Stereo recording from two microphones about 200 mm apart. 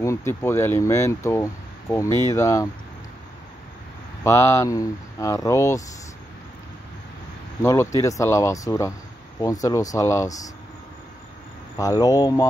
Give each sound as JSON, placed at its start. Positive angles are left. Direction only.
{"t": 0.0, "sound": "speech", "side_deg": 15}
{"t": 4.2, "sound": "speech", "side_deg": 15}
{"t": 7.6, "sound": "speech", "side_deg": 15}
{"t": 11.7, "sound": "speech", "side_deg": 20}